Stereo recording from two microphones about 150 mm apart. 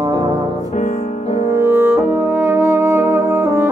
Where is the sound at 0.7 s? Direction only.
50° left (ahead or behind).